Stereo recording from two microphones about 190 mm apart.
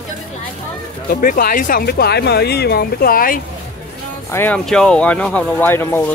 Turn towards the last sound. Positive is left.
turn(degrees=10)  # may be behind; listen again after turning